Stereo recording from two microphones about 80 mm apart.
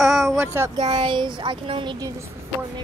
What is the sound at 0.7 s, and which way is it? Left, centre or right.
A child's voice, right.